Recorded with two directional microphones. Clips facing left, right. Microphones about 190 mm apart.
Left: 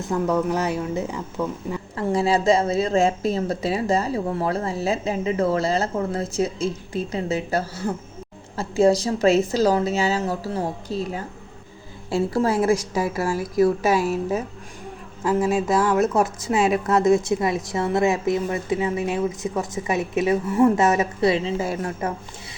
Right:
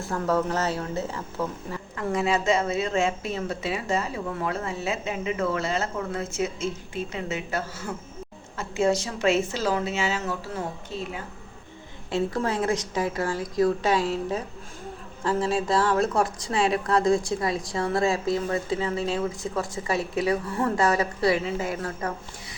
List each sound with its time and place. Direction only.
0.0 s speech: 15° left (ahead or behind)
2.0 s speech: 30° left (ahead or behind)
15.2 s speech: 20° left (ahead or behind)